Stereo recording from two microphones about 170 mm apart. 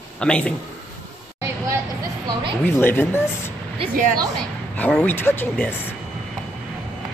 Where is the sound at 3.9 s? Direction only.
55° right (ahead or behind).